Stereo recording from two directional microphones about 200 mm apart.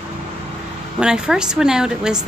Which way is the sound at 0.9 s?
5° right (ahead or behind).